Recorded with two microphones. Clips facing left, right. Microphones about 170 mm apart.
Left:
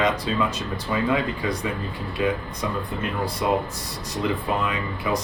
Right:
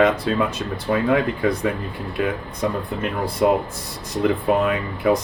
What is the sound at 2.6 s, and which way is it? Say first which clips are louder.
Speech: right 6 dB; 50° right (ahead or behind).